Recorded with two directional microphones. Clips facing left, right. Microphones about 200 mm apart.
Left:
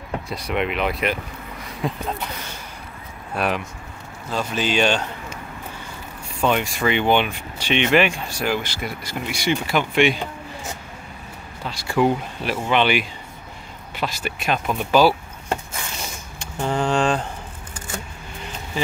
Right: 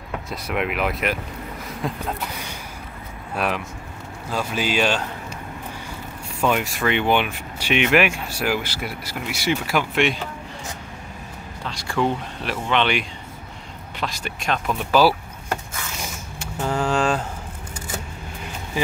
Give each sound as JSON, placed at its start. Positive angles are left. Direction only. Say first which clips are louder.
{"t": 0.3, "sound": "speech", "louder": "left 1 dB", "side_deg": -5}
{"t": 3.3, "sound": "speech", "louder": "left 1 dB", "side_deg": 0}
{"t": 6.4, "sound": "speech", "louder": "left 1 dB", "side_deg": -5}
{"t": 11.6, "sound": "speech", "louder": "left 3 dB", "side_deg": 5}
{"t": 16.6, "sound": "speech", "louder": "left 1 dB", "side_deg": -5}